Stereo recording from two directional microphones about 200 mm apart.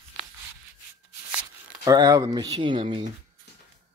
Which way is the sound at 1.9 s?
20° right (ahead or behind).